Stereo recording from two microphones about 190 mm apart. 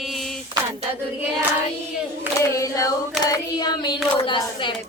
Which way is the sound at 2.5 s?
15° left (ahead or behind).